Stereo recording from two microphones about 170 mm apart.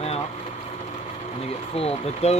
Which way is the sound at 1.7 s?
35° left (ahead or behind).